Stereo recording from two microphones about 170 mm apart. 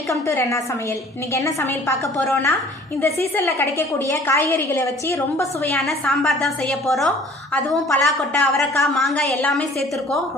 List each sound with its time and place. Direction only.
0.1 s a woman's voice: 15° left (ahead or behind)
5.8 s a woman's voice: centre (ahead or behind)